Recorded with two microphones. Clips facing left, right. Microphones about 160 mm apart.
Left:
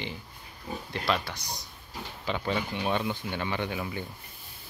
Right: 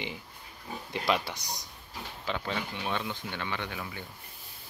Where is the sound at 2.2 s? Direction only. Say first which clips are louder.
Left 4 dB; 5° left (ahead or behind).